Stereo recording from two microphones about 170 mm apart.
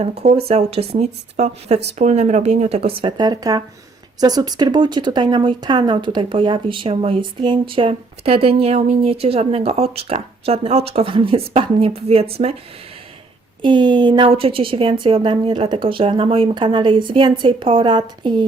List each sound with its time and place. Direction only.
0.0 s a woman's voice: 35° right (ahead or behind)
13.6 s a woman's voice: 25° right (ahead or behind)